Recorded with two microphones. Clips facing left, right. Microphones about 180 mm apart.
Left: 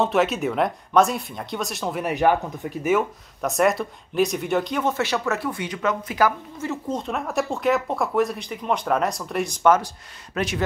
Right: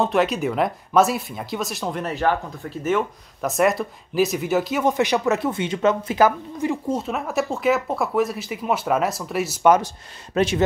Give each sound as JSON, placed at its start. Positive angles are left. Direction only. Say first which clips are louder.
{"t": 0.0, "sound": "speech", "louder": "right 1 dB", "side_deg": 0}
{"t": 2.0, "sound": "speech", "louder": "left 3 dB", "side_deg": 15}
{"t": 9.6, "sound": "speech", "louder": "right 2 dB", "side_deg": -15}
{"t": 10.3, "sound": "speech", "louder": "right 6 dB", "side_deg": -25}